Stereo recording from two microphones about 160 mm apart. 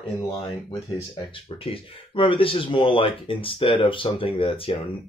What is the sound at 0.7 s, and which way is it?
Speech, 30° left (ahead or behind).